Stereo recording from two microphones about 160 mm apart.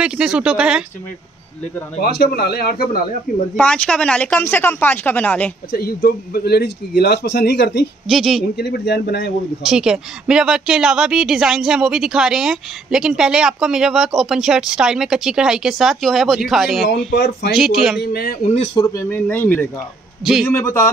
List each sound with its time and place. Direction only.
0.0 s speech: 5° right (ahead or behind)
2.0 s speech: 85° left; by 3.0 s 70° left (ahead or behind)
3.5 s speech: 5° left (ahead or behind)
5.7 s speech: 70° left (ahead or behind); by 7.8 s 90° left
8.1 s speech: centre (ahead or behind)
8.5 s speech: 90° left
9.6 s speech: 5° right (ahead or behind)
17.1 s speech: 90° left
17.5 s speech: centre (ahead or behind)
18.0 s a man's voice: 80° left
18.8 s speech: 20° left (ahead or behind)